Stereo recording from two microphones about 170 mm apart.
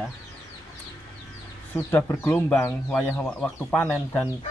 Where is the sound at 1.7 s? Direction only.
15° left (ahead or behind).